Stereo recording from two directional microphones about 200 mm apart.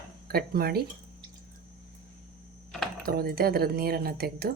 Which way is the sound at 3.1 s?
50° right (ahead or behind).